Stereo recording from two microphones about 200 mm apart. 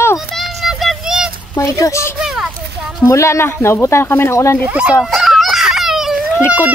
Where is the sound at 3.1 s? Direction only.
15° left (ahead or behind).